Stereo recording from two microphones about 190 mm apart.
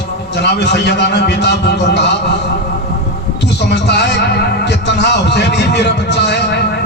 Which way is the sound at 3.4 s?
65° left (ahead or behind).